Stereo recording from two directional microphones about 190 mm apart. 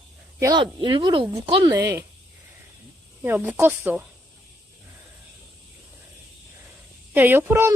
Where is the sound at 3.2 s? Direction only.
10° right (ahead or behind).